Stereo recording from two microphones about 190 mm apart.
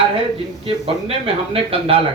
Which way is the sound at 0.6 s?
30° right (ahead or behind).